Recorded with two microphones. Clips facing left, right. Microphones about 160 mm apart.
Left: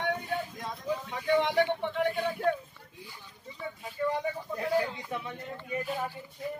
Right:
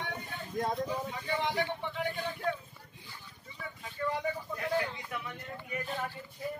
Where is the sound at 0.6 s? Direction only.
45° right (ahead or behind).